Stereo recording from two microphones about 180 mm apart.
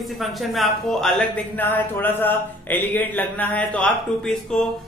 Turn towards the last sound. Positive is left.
turn(degrees=5)  # may be behind; listen again after turning